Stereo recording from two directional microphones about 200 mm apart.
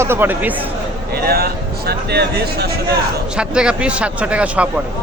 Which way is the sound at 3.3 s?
5° right (ahead or behind).